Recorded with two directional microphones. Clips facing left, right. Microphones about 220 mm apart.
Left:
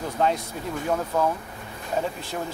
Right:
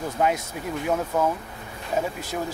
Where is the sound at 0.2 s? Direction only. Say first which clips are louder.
Even; 10° right (ahead or behind).